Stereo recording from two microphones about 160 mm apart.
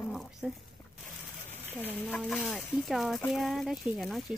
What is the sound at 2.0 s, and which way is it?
Speech, 5° left (ahead or behind).